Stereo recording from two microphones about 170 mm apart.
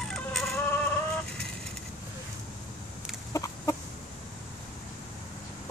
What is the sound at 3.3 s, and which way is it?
Chicken, 20° left (ahead or behind).